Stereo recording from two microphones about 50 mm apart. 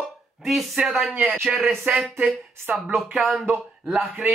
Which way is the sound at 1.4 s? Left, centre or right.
Centre.